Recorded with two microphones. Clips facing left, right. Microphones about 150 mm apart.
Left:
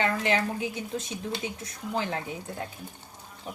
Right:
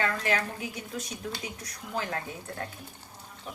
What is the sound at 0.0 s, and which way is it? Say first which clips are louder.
A woman's voice: left 3 dB; 25° left (ahead or behind).